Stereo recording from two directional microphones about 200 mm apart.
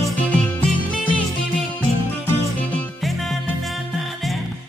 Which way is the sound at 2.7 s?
5° left (ahead or behind).